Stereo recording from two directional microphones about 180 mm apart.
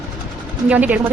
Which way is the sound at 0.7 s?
10° right (ahead or behind).